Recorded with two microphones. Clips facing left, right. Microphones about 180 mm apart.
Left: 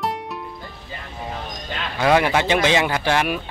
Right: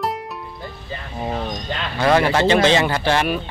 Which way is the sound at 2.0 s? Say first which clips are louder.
Right 1 dB; 10° left (ahead or behind).